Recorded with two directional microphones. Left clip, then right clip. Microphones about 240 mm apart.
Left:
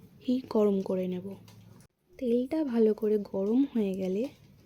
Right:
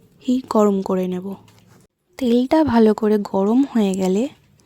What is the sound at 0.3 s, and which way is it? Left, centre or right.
Speech, right.